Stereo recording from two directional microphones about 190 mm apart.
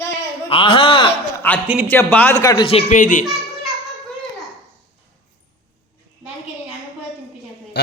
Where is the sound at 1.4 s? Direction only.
10° left (ahead or behind).